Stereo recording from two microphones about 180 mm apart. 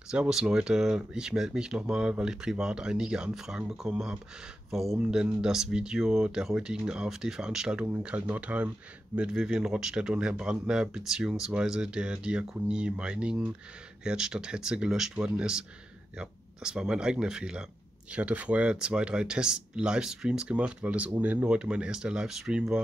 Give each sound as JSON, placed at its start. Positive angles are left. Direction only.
{"t": 0.1, "sound": "speech", "side_deg": -5}